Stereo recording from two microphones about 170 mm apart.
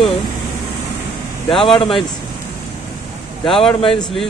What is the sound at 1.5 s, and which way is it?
Speech, centre (ahead or behind).